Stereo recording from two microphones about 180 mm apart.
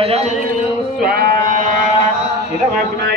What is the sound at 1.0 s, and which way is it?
Sheep, 55° right (ahead or behind).